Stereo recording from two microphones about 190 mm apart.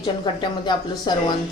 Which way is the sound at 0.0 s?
25° left (ahead or behind).